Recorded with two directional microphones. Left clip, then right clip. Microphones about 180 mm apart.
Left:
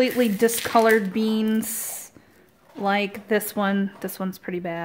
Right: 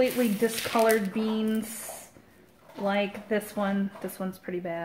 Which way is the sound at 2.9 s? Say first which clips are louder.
Left 5 dB; 60° left (ahead or behind).